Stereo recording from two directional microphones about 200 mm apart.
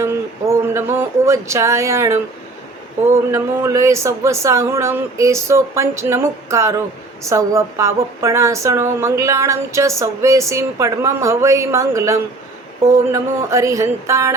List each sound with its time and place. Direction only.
0.6 s speech: 10° right (ahead or behind)
3.3 s speech: 15° right (ahead or behind)